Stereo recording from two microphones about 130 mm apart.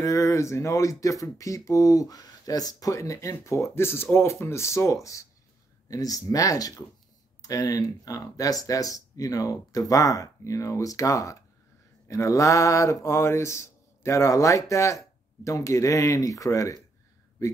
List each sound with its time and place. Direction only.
0.0 s speech: 25° left (ahead or behind)